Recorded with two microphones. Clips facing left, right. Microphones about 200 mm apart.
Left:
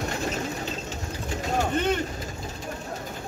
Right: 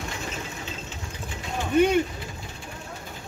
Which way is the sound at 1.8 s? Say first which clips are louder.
Right 9 dB; 10° right (ahead or behind).